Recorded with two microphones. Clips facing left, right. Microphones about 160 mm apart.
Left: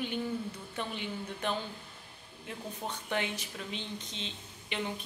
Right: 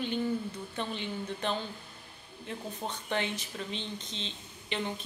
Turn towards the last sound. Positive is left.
turn(degrees=10)  # may be behind; listen again after turning